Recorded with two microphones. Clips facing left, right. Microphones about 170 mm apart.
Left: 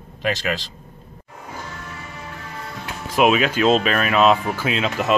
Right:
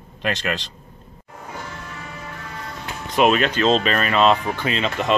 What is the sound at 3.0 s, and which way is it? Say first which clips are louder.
Speech: even; 5° left (ahead or behind).